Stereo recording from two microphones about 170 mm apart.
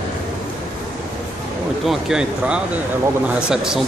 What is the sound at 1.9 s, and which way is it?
Speech, 5° right (ahead or behind).